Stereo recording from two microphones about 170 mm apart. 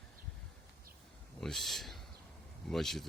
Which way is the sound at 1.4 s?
Centre (ahead or behind).